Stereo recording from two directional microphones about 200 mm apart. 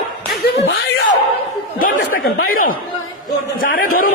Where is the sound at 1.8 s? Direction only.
45° left (ahead or behind).